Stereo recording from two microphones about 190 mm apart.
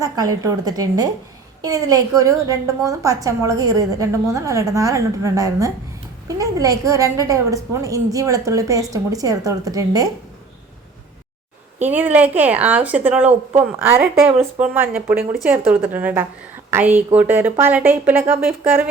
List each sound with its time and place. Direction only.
0.0 s a woman's voice: 15° right (ahead or behind)
11.8 s a woman's voice: 10° right (ahead or behind)